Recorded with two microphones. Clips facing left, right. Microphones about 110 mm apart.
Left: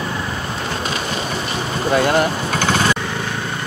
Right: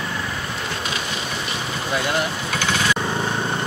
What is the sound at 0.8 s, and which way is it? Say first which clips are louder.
Vehicle: left 4 dB; 40° left (ahead or behind).